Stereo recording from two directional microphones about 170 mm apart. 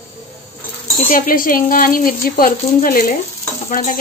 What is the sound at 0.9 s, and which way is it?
Speech, 50° left (ahead or behind).